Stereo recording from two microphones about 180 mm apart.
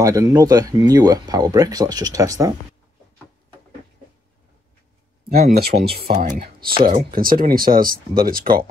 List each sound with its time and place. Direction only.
0.0 s speech: 20° right (ahead or behind)
5.5 s speech: 65° right (ahead or behind)